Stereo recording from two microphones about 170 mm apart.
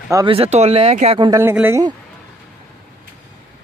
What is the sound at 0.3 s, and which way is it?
Speech, 35° right (ahead or behind).